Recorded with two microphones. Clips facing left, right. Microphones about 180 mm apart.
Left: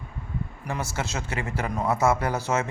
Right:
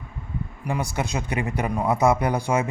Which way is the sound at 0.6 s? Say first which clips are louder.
Right 5 dB; 15° right (ahead or behind).